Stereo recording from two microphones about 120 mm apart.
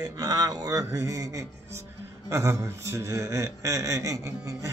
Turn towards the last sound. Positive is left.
turn(degrees=-25)  # may be behind; listen again after turning